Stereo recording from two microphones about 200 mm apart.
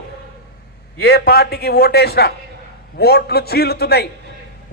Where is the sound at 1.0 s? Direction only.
55° left (ahead or behind).